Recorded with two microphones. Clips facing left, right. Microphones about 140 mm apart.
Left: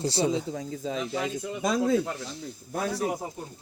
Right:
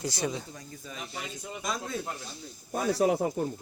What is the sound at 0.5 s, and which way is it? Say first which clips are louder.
Speech: left 12 dB; 90° left.